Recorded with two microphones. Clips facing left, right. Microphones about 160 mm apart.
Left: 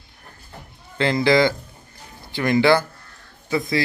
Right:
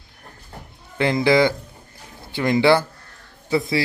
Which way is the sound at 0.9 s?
20° right (ahead or behind).